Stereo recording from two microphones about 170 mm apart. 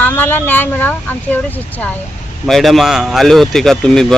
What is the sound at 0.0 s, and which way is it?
Speech, 10° left (ahead or behind).